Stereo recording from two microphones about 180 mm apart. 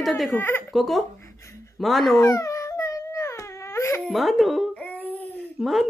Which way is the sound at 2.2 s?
15° left (ahead or behind).